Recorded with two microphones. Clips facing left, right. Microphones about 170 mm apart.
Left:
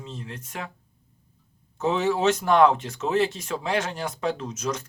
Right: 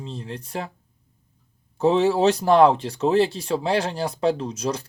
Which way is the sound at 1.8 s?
35° right (ahead or behind).